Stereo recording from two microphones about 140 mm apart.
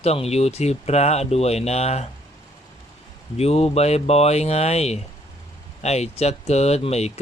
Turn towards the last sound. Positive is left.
turn(degrees=50)  # may be behind; listen again after turning